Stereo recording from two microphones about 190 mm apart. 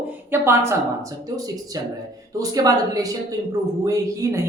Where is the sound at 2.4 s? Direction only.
20° right (ahead or behind).